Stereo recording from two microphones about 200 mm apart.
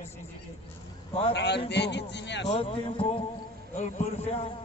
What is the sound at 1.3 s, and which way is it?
A man's voice, 60° left (ahead or behind).